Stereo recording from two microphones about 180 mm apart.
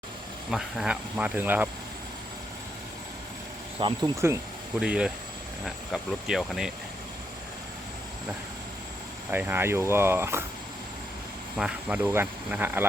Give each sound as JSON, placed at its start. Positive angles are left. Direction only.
{"t": 0.5, "sound": "speech", "side_deg": -5}
{"t": 3.8, "sound": "speech", "side_deg": -25}
{"t": 4.8, "sound": "speech", "side_deg": -5}
{"t": 9.3, "sound": "speech", "side_deg": -10}
{"t": 11.5, "sound": "speech", "side_deg": -5}